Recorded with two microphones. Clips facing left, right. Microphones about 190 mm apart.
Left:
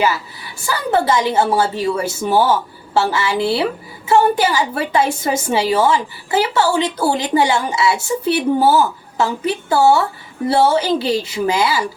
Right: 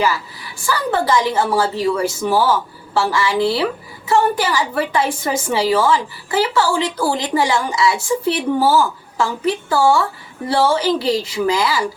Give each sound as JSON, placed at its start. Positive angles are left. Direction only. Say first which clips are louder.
{"t": 0.6, "sound": "a woman's voice", "louder": "left 1 dB", "side_deg": 25}